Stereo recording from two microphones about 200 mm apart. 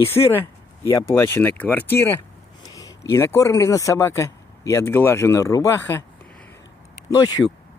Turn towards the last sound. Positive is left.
turn(degrees=20)  # may be behind; listen again after turning